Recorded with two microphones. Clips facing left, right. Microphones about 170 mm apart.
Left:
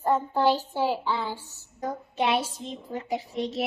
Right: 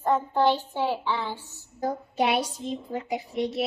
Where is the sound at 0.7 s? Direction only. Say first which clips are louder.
Left 1 dB; 10° left (ahead or behind).